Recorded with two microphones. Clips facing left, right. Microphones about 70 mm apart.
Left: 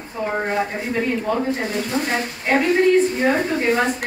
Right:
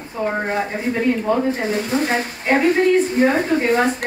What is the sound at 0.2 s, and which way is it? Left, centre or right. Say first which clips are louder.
Speech: right 1 dB; centre.